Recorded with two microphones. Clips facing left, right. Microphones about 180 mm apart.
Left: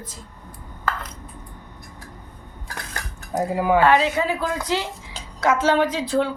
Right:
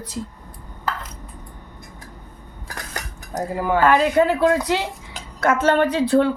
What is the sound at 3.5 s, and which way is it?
Speech, 10° left (ahead or behind).